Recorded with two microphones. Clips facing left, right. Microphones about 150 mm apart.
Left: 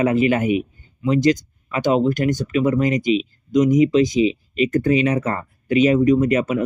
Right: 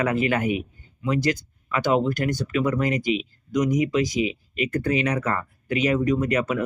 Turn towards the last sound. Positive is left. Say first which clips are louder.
# left 5 dB
turn(degrees=25)  # may be behind; listen again after turning